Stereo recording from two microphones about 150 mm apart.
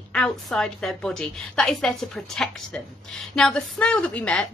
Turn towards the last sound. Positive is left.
turn(degrees=5)  # may be behind; listen again after turning